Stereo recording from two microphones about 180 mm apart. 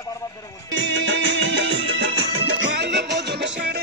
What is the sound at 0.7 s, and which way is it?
Music, 90° right.